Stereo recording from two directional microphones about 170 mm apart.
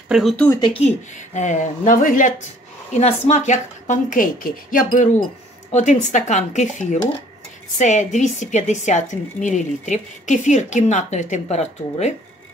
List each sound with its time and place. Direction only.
0.1 s speech: centre (ahead or behind)
0.5 s speech: 25° left (ahead or behind)
0.8 s a woman's voice: 45° left (ahead or behind)
2.9 s a woman's voice: 40° left (ahead or behind)